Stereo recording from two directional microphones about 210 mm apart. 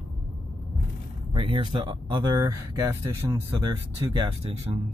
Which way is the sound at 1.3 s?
25° right (ahead or behind).